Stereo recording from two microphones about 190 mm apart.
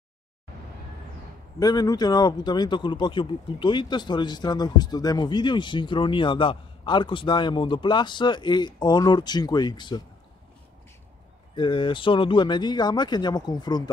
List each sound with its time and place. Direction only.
1.6 s a man's voice: 20° left (ahead or behind)
11.5 s a man's voice: 25° left (ahead or behind)